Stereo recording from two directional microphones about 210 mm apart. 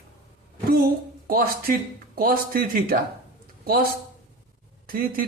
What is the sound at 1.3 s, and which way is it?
Speech, 45° right (ahead or behind).